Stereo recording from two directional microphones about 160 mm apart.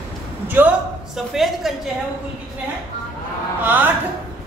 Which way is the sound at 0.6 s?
15° right (ahead or behind).